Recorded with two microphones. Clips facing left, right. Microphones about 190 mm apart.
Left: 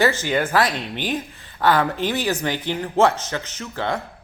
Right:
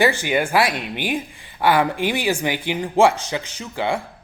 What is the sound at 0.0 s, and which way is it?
A woman's voice, 15° right (ahead or behind).